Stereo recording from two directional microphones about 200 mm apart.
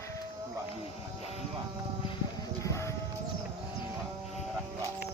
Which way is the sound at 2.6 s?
15° left (ahead or behind).